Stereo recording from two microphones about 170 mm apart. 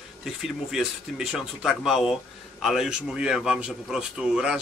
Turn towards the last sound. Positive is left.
turn(degrees=-5)  # may be behind; listen again after turning